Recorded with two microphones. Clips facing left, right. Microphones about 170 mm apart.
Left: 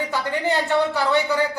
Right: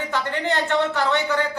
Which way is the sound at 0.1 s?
10° left (ahead or behind).